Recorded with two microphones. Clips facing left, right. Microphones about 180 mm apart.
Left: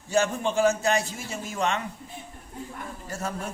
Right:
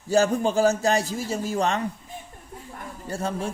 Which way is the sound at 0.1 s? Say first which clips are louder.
Right 4 dB; 35° right (ahead or behind).